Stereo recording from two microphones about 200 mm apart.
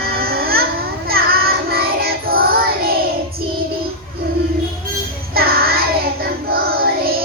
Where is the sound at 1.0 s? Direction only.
50° right (ahead or behind).